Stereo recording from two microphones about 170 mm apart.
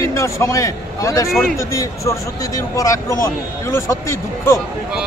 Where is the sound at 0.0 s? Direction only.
15° left (ahead or behind).